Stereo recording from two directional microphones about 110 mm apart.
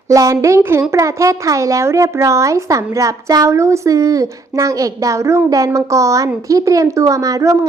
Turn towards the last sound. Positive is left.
turn(degrees=-30)  # may be behind; listen again after turning